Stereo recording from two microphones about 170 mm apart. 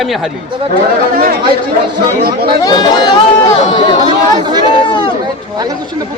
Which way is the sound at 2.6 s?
25° left (ahead or behind).